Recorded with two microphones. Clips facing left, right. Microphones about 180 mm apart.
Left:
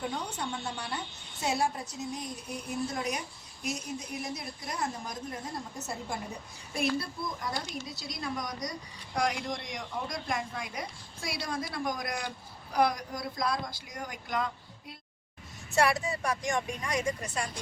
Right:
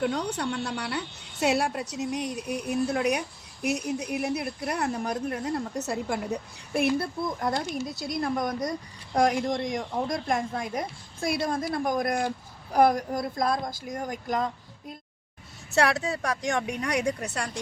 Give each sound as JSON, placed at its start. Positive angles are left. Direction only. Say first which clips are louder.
{"t": 0.0, "sound": "speech", "louder": "right 7 dB", "side_deg": -75}
{"t": 7.0, "sound": "speech", "louder": "right 8 dB", "side_deg": -55}
{"t": 15.7, "sound": "speech", "louder": "right 3 dB", "side_deg": -70}